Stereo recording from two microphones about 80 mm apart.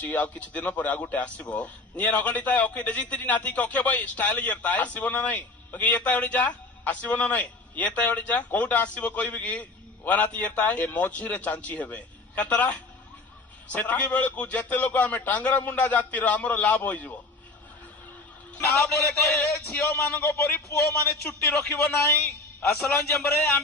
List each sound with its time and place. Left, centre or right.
0.0 s speech: left
18.7 s a man's voice: left
19.7 s speech: left
21.5 s a man's voice: left